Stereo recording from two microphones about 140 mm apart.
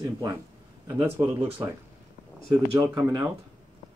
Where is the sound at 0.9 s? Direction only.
20° right (ahead or behind).